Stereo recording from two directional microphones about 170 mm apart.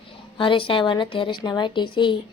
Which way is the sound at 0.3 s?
30° left (ahead or behind).